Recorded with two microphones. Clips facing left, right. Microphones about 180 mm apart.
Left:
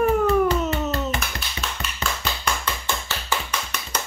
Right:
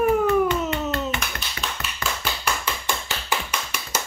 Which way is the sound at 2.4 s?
10° right (ahead or behind).